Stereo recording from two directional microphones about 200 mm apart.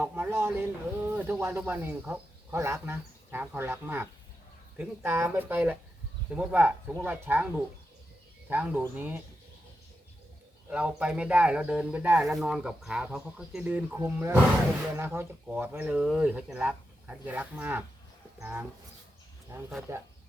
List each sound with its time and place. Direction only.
0.0 s speech: 10° right (ahead or behind)
10.7 s speech: 5° right (ahead or behind)